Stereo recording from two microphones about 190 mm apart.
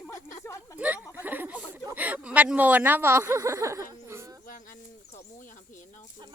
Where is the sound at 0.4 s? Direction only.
15° left (ahead or behind).